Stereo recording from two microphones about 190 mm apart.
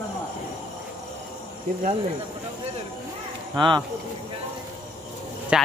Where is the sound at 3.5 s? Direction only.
20° right (ahead or behind).